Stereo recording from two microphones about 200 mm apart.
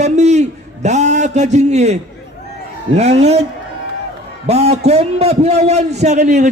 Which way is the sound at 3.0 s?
30° right (ahead or behind).